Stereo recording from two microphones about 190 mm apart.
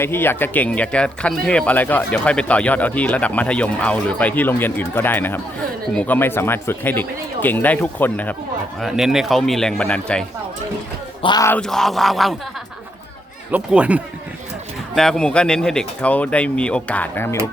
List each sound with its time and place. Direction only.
0.0 s speech: 10° left (ahead or behind)
11.2 s speech: 20° left (ahead or behind)
11.5 s speech: 5° left (ahead or behind)
13.5 s speech: 5° right (ahead or behind); by 17.3 s 10° left (ahead or behind)